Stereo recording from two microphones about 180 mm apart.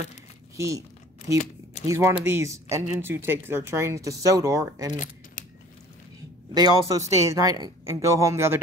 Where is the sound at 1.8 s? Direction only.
15° right (ahead or behind).